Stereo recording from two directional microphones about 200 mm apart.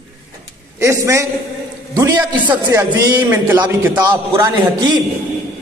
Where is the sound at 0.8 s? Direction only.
15° right (ahead or behind).